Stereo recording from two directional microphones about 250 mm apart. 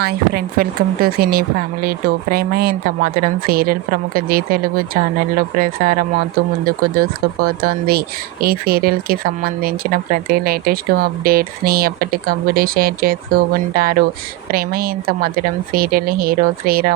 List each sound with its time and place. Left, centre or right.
0.0 s speech: right